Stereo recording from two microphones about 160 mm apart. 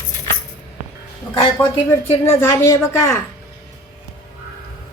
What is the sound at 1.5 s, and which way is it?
A woman's voice, 15° left (ahead or behind).